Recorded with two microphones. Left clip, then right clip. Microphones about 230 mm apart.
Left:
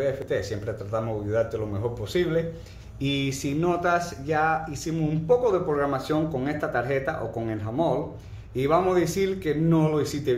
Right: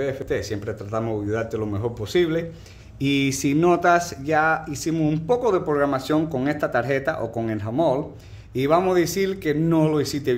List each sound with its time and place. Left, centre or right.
0.0 s speech: right